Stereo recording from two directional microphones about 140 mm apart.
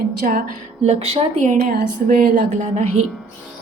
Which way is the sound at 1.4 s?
70° right (ahead or behind).